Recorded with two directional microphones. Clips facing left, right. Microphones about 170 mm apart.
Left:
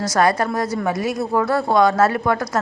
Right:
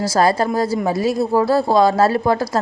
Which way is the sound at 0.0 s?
30° right (ahead or behind).